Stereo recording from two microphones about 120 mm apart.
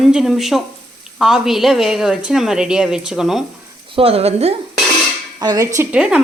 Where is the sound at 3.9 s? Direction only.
55° right (ahead or behind).